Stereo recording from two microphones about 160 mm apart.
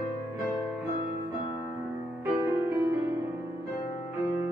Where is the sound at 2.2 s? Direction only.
10° right (ahead or behind).